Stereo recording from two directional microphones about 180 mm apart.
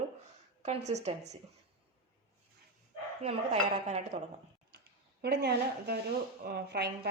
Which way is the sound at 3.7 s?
40° right (ahead or behind).